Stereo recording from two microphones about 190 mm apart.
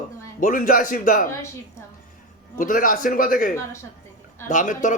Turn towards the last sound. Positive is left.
turn(degrees=40)  # may be behind; listen again after turning